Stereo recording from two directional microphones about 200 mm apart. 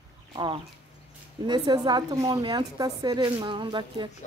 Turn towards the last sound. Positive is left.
turn(degrees=-25)  # may be behind; listen again after turning